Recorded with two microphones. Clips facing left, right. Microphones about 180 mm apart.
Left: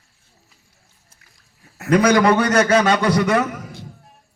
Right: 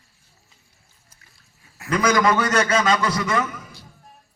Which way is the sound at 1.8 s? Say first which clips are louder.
Left 5 dB; 65° left (ahead or behind).